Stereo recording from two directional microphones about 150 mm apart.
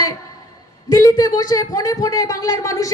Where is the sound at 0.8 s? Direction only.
25° left (ahead or behind).